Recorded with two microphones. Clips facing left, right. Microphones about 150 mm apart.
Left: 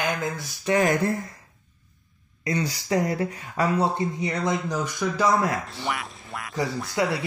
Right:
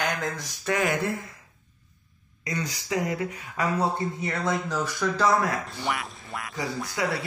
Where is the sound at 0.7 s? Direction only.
40° left (ahead or behind).